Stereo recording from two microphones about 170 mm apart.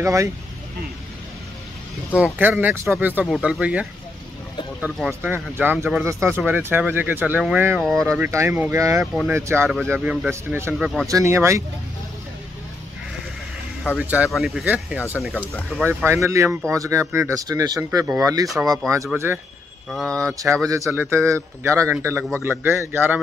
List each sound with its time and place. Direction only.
0.0 s a man's voice: 20° right (ahead or behind)
2.1 s a man's voice: 10° right (ahead or behind)
3.3 s speech: centre (ahead or behind)
4.8 s a man's voice: 5° right (ahead or behind)
7.8 s speech: centre (ahead or behind)
8.2 s a man's voice: 15° right (ahead or behind)
9.0 s speech: 5° right (ahead or behind)
9.3 s a man's voice: 15° right (ahead or behind)
10.7 s speech: centre (ahead or behind)
11.1 s a man's voice: 20° right (ahead or behind)
13.9 s a man's voice: 10° right (ahead or behind)
19.9 s speech: centre (ahead or behind)
20.2 s a man's voice: 15° right (ahead or behind)